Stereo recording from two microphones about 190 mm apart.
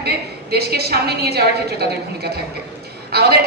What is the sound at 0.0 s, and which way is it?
A woman's voice, 60° right (ahead or behind).